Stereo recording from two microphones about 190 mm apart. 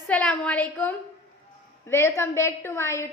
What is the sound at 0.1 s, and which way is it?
A woman's voice, 5° left (ahead or behind).